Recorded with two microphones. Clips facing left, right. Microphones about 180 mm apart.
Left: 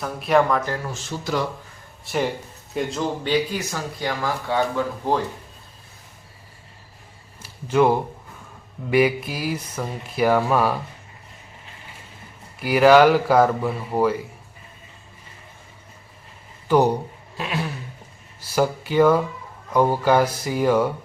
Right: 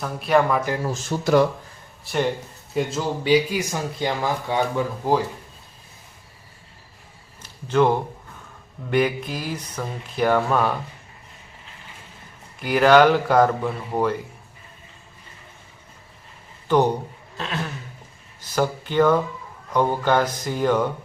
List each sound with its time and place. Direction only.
0.0 s speech: centre (ahead or behind)
0.9 s speech: 45° right (ahead or behind)
2.1 s speech: centre (ahead or behind); by 5.1 s 15° right (ahead or behind)
7.4 s speech: 10° left (ahead or behind)
12.5 s speech: 5° left (ahead or behind)
16.6 s speech: 10° left (ahead or behind)